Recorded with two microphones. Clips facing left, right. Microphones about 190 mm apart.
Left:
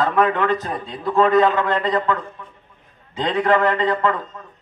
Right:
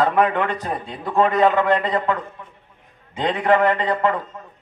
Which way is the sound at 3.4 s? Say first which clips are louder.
Even; 20° right (ahead or behind).